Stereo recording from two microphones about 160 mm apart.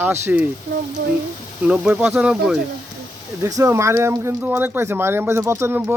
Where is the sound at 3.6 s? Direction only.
15° right (ahead or behind).